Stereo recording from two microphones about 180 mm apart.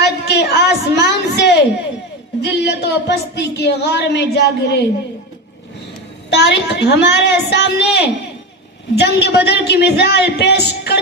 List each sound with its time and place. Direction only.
0.0 s a sound: 65° left (ahead or behind)
2.4 s a woman's voice: 70° left (ahead or behind)
6.4 s a woman's voice: 70° left (ahead or behind)